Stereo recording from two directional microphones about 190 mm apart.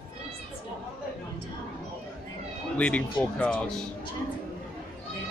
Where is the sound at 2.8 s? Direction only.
5° left (ahead or behind).